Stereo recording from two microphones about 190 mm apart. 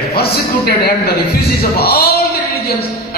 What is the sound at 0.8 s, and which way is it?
A man's voice, 55° left (ahead or behind).